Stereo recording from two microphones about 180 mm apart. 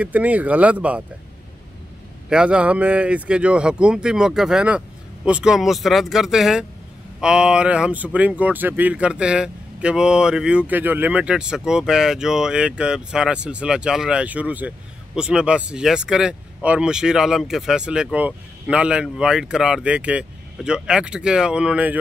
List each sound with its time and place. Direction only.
0.0 s speech: 10° right (ahead or behind)
2.2 s speech: 5° right (ahead or behind)